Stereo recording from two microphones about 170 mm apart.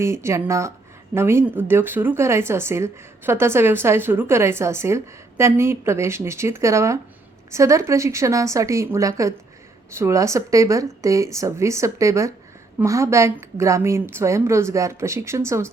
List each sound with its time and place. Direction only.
0.0 s speech: 15° right (ahead or behind)